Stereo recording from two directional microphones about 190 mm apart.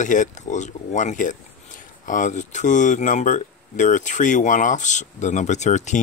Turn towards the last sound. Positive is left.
turn(degrees=40)  # may be behind; listen again after turning